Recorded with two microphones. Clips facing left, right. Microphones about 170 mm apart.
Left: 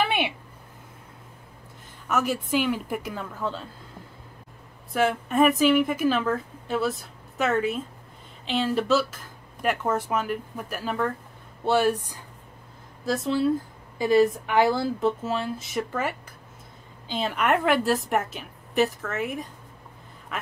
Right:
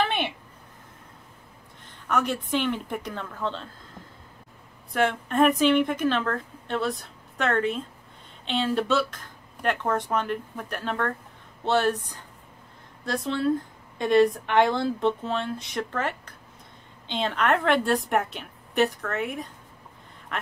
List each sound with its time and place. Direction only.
0.0 s a sound: 10° left (ahead or behind)
2.0 s speech: 5° left (ahead or behind)
4.9 s a woman's voice: 5° left (ahead or behind)